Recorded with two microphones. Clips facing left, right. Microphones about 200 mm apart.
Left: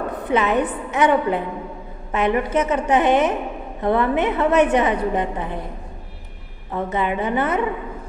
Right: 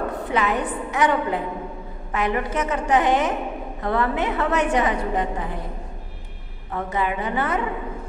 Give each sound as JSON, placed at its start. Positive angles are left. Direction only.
{"t": 0.1, "sound": "a woman's voice", "side_deg": 20}
{"t": 6.7, "sound": "a woman's voice", "side_deg": 20}